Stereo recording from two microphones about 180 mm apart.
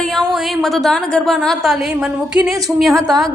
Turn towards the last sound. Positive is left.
turn(degrees=0)  # may be behind; listen again after turning